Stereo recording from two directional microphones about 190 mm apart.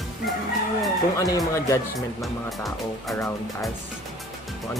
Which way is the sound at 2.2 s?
Centre (ahead or behind).